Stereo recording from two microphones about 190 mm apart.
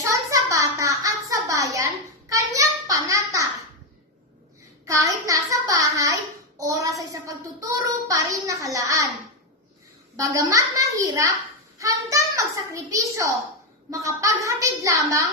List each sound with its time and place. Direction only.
0.1 s a sound: 15° right (ahead or behind)
4.9 s a child's voice: 15° right (ahead or behind)
10.2 s a child's voice: 15° right (ahead or behind)